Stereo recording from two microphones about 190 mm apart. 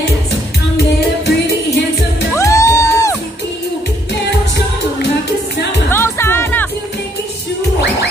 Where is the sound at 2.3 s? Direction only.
15° left (ahead or behind).